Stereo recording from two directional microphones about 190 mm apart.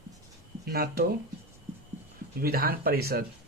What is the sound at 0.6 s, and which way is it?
Speech, 55° right (ahead or behind).